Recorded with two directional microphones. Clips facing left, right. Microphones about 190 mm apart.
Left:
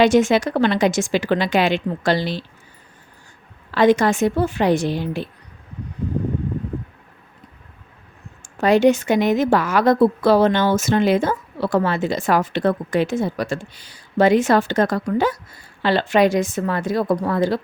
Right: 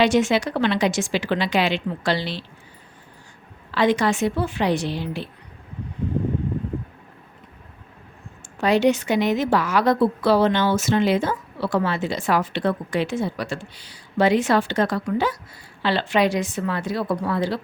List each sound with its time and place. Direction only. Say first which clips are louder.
0.0 s a woman's voice: left 4 dB; 45° left (ahead or behind)
3.7 s a woman's voice: left 4 dB; 45° left (ahead or behind)
8.4 s a woman's voice: left 4 dB; 50° left (ahead or behind)